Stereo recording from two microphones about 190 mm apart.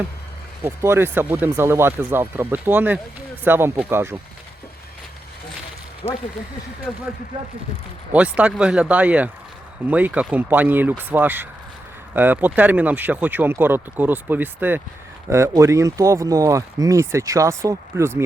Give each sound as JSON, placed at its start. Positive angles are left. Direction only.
{"t": 0.6, "sound": "speech", "side_deg": -10}
{"t": 6.0, "sound": "speech", "side_deg": 25}
{"t": 8.1, "sound": "speech", "side_deg": -5}